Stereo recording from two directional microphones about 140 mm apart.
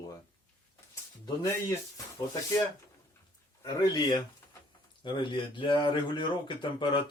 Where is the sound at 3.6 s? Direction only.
30° left (ahead or behind).